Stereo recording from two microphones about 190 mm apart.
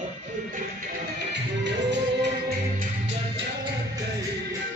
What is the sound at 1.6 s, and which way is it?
Music, 65° right (ahead or behind).